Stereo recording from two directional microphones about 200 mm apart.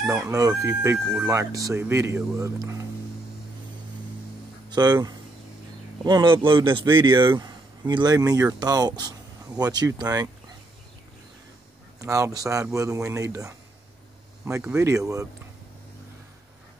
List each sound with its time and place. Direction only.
0.1 s chicken: 15° right (ahead or behind)
4.6 s speech: 20° right (ahead or behind)
12.0 s chicken: 15° right (ahead or behind)
14.8 s chicken: 15° right (ahead or behind)